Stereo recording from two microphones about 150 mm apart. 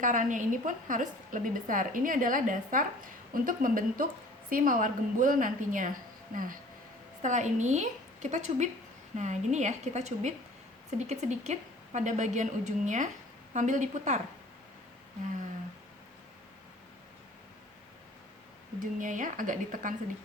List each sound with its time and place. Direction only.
0.0 s a woman's voice: 60° right (ahead or behind)
7.2 s a woman's voice: 55° right (ahead or behind)
18.9 s a woman's voice: 60° right (ahead or behind)